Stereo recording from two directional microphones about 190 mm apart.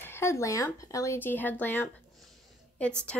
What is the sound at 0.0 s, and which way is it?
Speech, 15° left (ahead or behind).